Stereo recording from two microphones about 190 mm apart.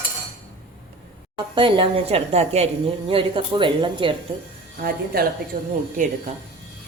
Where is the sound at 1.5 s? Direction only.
25° right (ahead or behind).